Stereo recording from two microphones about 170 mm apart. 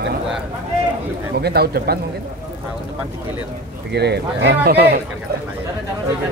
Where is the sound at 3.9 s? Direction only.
75° right (ahead or behind).